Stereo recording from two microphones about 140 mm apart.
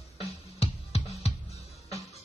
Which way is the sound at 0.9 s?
50° left (ahead or behind).